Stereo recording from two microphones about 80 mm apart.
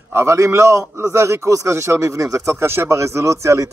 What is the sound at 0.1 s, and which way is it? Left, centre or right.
A man's voice, right.